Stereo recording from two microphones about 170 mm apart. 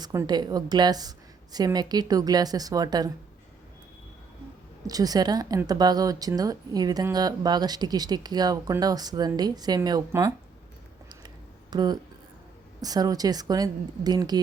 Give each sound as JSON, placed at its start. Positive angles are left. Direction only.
{"t": 0.0, "sound": "a woman's voice", "side_deg": -20}
{"t": 4.9, "sound": "a woman's voice", "side_deg": -20}
{"t": 11.7, "sound": "a woman's voice", "side_deg": -25}